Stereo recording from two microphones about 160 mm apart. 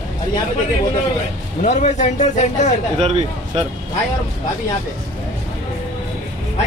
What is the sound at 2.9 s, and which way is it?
Speech, 40° right (ahead or behind).